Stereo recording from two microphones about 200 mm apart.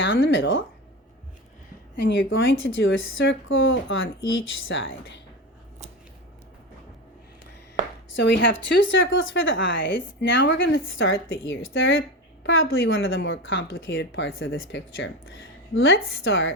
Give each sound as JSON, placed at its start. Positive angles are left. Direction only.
{"t": 0.3, "sound": "a woman's voice", "side_deg": 65}
{"t": 2.0, "sound": "a woman's voice", "side_deg": 65}
{"t": 8.1, "sound": "a woman's voice", "side_deg": 60}